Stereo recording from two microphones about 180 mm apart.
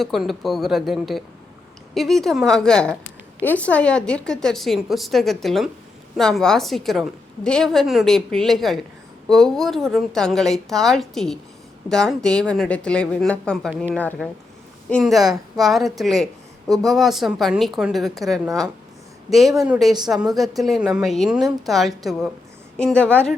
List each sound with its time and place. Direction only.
0.0 s a woman's voice: centre (ahead or behind)